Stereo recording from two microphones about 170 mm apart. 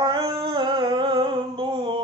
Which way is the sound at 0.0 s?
25° right (ahead or behind).